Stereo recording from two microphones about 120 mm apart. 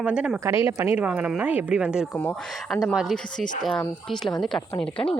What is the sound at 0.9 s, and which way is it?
A woman's voice, 10° right (ahead or behind).